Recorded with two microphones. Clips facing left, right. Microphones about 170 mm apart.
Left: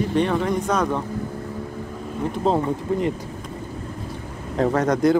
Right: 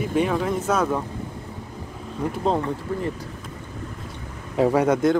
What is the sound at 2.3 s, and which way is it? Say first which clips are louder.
Speech: left 2 dB; centre (ahead or behind).